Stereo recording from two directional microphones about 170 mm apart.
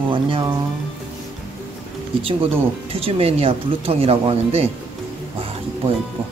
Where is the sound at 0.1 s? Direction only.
30° right (ahead or behind).